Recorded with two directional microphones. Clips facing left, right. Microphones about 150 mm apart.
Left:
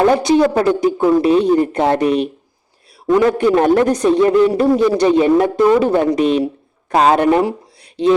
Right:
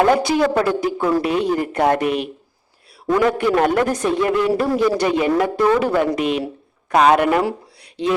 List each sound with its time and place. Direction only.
0.2 s a man's voice: 20° left (ahead or behind)
3.1 s a man's voice: 20° left (ahead or behind)